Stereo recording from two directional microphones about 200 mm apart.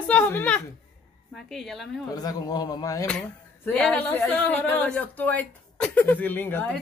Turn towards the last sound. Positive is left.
turn(degrees=10)  # may be behind; listen again after turning